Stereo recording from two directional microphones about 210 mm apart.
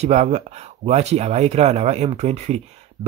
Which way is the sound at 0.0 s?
30° right (ahead or behind).